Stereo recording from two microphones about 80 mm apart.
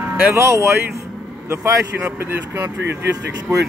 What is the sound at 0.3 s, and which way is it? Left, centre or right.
Speech, right.